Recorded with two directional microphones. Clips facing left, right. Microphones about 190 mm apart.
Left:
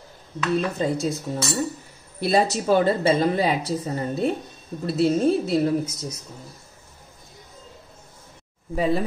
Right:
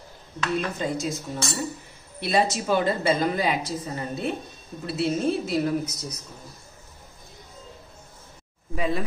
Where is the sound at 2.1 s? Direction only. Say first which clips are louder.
Left 3 dB; 40° left (ahead or behind).